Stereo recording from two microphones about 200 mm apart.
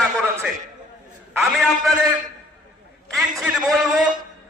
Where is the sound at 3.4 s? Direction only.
Centre (ahead or behind).